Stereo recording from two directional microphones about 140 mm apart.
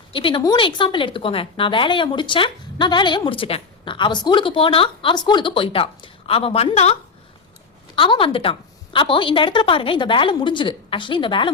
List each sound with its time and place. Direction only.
0.1 s a woman's voice: 35° left (ahead or behind)
7.9 s a woman's voice: 35° left (ahead or behind)